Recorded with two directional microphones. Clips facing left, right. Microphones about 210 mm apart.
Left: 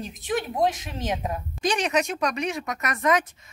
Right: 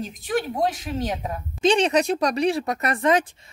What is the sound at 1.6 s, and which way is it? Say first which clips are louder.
Speech: right 6 dB; 25° right (ahead or behind).